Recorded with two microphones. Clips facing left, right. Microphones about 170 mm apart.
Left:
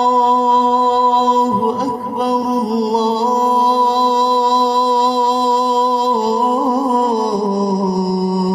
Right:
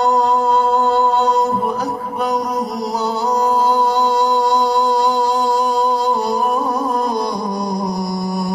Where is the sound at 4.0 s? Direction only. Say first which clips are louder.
Left 1 dB; 30° left (ahead or behind).